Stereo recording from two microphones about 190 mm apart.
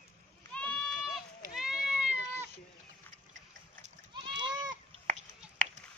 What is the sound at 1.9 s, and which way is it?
Cat, 5° right (ahead or behind).